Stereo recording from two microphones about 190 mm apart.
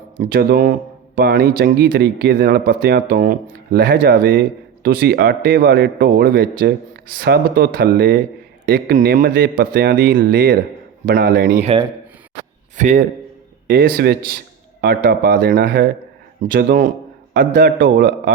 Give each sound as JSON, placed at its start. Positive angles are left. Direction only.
{"t": 0.2, "sound": "speech", "side_deg": -50}
{"t": 11.6, "sound": "speech", "side_deg": -30}
{"t": 12.7, "sound": "a man's voice", "side_deg": -40}
{"t": 13.7, "sound": "a man's voice", "side_deg": -55}